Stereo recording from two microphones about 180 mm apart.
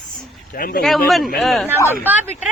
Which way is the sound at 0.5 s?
50° left (ahead or behind).